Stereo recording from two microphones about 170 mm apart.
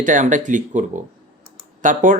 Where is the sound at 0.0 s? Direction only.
50° right (ahead or behind).